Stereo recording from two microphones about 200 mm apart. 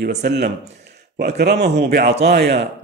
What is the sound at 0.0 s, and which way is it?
Speech, 55° right (ahead or behind).